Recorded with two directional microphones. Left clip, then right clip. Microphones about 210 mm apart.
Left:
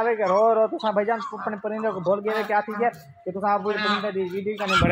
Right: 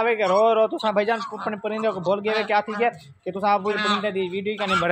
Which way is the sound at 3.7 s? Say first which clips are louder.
Right 1 dB; 55° right (ahead or behind).